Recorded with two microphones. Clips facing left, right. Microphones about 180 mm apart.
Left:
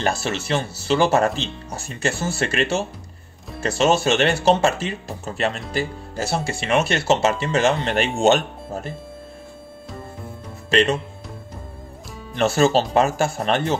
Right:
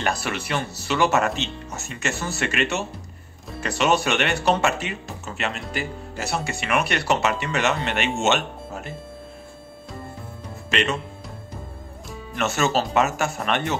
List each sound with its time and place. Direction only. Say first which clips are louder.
0.0 s speech: left 3 dB; 25° left (ahead or behind)
10.7 s speech: left 6 dB; 35° left (ahead or behind)
12.4 s speech: left 5 dB; 30° left (ahead or behind)